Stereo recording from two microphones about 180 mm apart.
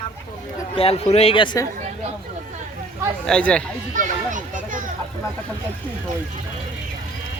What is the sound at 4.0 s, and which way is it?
Children playing, 45° right (ahead or behind).